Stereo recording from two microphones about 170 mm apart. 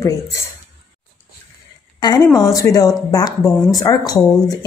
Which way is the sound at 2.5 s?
20° left (ahead or behind).